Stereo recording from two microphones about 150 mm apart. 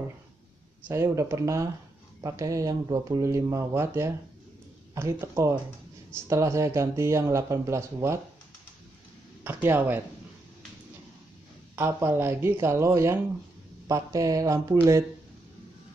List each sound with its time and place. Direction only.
0.8 s speech: 20° right (ahead or behind)
9.4 s speech: 15° right (ahead or behind)
11.7 s speech: 15° right (ahead or behind)